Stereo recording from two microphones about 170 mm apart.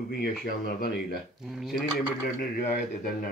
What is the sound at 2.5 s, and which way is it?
Speech, 55° left (ahead or behind).